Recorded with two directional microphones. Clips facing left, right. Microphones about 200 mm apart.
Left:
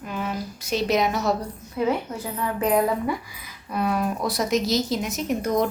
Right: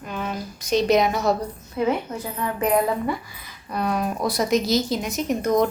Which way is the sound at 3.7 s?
5° left (ahead or behind).